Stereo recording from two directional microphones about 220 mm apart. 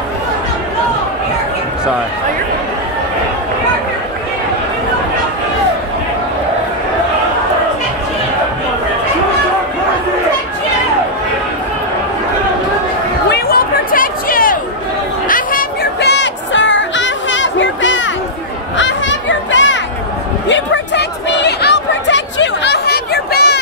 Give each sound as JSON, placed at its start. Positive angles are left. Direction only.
{"t": 13.3, "sound": "chatter", "side_deg": 40}
{"t": 15.2, "sound": "music", "side_deg": 40}
{"t": 18.8, "sound": "children playing", "side_deg": 55}
{"t": 20.4, "sound": "chatter", "side_deg": 55}